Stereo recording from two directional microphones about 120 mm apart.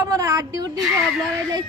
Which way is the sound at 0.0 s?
30° right (ahead or behind).